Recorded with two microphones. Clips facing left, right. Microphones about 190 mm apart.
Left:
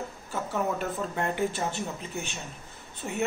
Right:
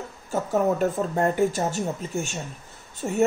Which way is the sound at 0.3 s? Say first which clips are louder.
Right 7 dB; 45° right (ahead or behind).